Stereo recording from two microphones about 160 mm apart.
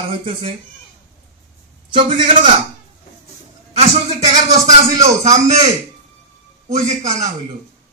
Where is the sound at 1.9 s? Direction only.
30° right (ahead or behind).